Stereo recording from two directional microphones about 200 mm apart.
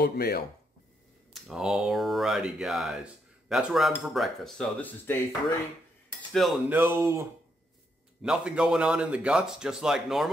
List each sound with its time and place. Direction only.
0.0 s speech: 50° left (ahead or behind)
1.3 s speech: centre (ahead or behind)
6.3 s speech: centre (ahead or behind)
6.8 s speech: 15° right (ahead or behind)